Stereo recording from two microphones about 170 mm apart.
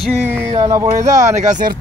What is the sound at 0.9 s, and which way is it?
Speech, 45° right (ahead or behind).